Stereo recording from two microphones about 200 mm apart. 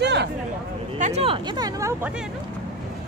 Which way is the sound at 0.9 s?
35° right (ahead or behind).